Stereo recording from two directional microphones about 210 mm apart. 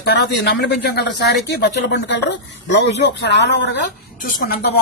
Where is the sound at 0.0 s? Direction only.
50° left (ahead or behind).